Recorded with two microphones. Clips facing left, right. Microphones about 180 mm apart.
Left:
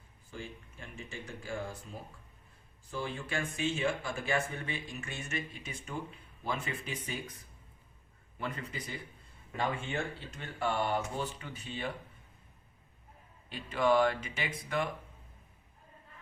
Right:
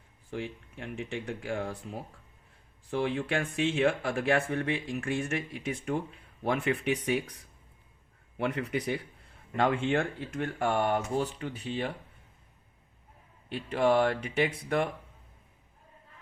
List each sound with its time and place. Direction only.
0.3 s speech: 65° right (ahead or behind); by 11.0 s 45° right (ahead or behind)
11.2 s speech: 70° right (ahead or behind)
13.7 s speech: 60° right (ahead or behind)